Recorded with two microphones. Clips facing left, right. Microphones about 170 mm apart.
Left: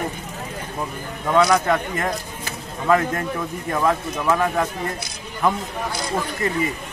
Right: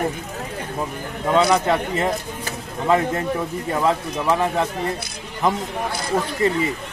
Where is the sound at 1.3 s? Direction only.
25° right (ahead or behind).